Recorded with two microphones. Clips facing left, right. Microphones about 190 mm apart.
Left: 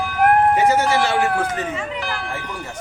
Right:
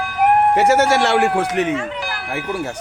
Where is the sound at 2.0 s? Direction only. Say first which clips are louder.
Even; 10° right (ahead or behind).